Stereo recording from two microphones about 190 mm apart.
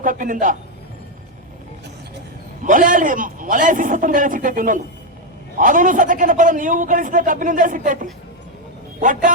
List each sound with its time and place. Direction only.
0.0 s a man's voice: 45° right (ahead or behind)
2.6 s a man's voice: 45° right (ahead or behind)
9.0 s a man's voice: 45° right (ahead or behind)